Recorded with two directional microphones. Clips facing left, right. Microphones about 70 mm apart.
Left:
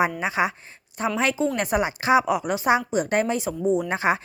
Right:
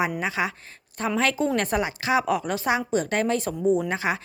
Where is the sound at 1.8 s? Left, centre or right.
Left.